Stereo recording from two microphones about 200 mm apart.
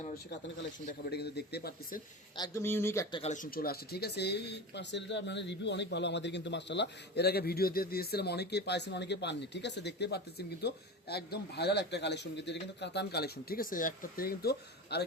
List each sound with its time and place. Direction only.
1.1 s speech: 55° left (ahead or behind)
2.4 s speech: 15° left (ahead or behind)
3.2 s speech: 35° left (ahead or behind); by 15.0 s 55° left (ahead or behind)